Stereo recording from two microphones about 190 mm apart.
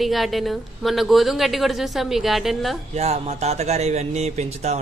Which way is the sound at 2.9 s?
35° right (ahead or behind).